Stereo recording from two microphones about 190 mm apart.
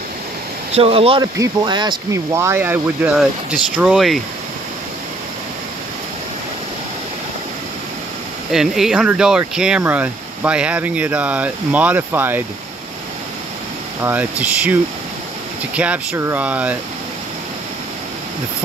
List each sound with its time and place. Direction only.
0.7 s speech: 30° right (ahead or behind); by 4.2 s centre (ahead or behind)
8.5 s speech: centre (ahead or behind)
14.0 s speech: 10° right (ahead or behind)